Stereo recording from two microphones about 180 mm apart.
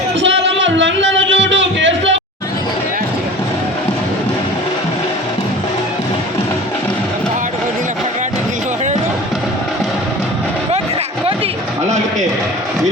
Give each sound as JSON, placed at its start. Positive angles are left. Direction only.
{"t": 0.2, "sound": "music", "side_deg": -85}